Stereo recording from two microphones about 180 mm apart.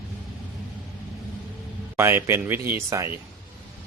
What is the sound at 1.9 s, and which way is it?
Speech, 15° right (ahead or behind).